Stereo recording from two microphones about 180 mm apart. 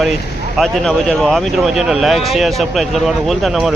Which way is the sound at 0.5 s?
Centre (ahead or behind).